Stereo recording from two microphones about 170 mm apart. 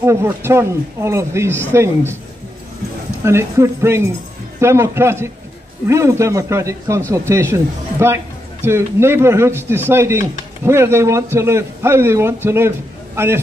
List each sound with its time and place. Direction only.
0.0 s speech: 15° right (ahead or behind)
3.3 s speech: 15° right (ahead or behind)